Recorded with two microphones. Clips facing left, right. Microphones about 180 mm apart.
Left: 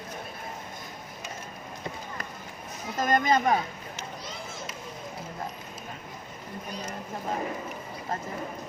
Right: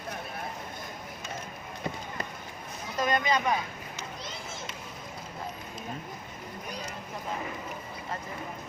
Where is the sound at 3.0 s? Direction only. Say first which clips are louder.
Left 3 dB; 45° left (ahead or behind).